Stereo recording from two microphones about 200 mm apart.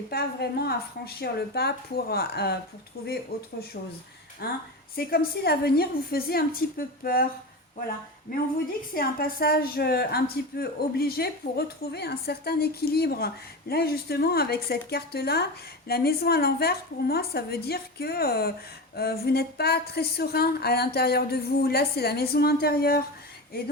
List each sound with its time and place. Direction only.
0.1 s a woman's voice: 50° left (ahead or behind)
8.3 s a woman's voice: 45° left (ahead or behind)